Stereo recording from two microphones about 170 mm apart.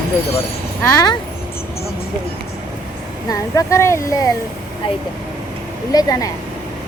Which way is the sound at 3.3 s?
20° left (ahead or behind).